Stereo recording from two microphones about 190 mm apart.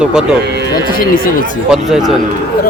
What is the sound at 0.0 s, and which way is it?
Speech, 5° right (ahead or behind).